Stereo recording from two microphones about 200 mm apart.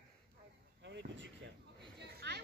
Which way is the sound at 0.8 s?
65° right (ahead or behind).